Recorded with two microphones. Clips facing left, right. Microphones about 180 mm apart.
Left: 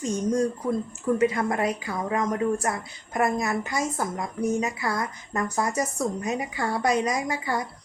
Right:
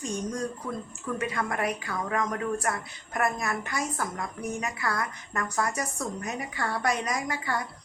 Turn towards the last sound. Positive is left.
turn(degrees=20)  # may be behind; listen again after turning